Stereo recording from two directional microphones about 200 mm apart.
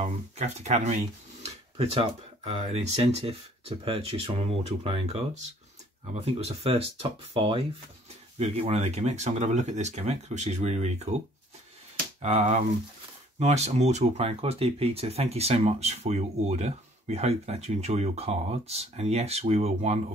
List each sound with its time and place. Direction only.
0.0 s speech: 35° right (ahead or behind)
12.2 s speech: 35° right (ahead or behind)